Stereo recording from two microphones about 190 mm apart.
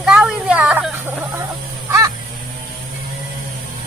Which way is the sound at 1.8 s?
15° right (ahead or behind).